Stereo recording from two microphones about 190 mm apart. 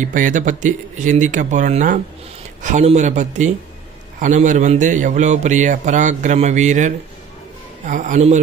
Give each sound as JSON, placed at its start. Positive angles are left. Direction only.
{"t": 0.0, "sound": "a man's voice", "side_deg": -45}
{"t": 7.9, "sound": "a man's voice", "side_deg": -40}